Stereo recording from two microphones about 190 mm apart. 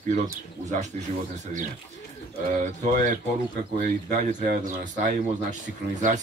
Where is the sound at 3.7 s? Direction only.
50° right (ahead or behind).